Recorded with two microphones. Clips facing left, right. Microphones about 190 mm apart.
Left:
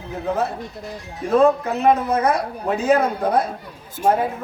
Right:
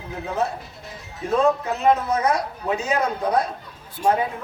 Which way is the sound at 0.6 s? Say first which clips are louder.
Left 8 dB; centre (ahead or behind).